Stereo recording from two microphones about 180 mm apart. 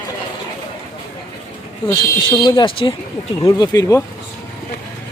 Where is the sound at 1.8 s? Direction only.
25° left (ahead or behind).